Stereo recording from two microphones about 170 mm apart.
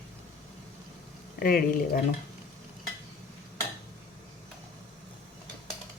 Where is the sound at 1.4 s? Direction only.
60° left (ahead or behind).